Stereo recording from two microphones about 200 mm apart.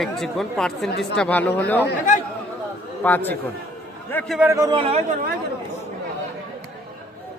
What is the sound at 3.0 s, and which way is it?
Speech, 10° left (ahead or behind).